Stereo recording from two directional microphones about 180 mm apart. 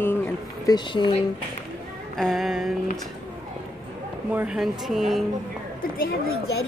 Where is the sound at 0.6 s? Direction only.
25° left (ahead or behind).